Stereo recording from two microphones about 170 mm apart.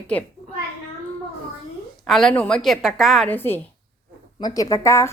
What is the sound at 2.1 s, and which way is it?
A woman's voice, centre (ahead or behind).